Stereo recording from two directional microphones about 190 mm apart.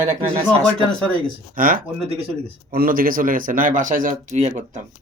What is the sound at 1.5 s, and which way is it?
Speech, 45° right (ahead or behind).